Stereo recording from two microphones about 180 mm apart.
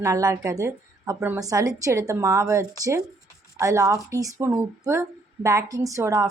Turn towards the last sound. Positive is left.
turn(degrees=-15)  # may be behind; listen again after turning